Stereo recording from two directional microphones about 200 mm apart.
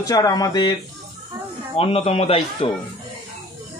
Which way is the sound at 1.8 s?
30° left (ahead or behind).